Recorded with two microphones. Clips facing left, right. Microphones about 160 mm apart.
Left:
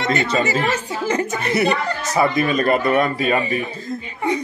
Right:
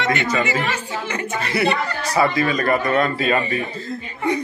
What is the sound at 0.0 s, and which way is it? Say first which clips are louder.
A woman's voice: left 1 dB; 35° left (ahead or behind).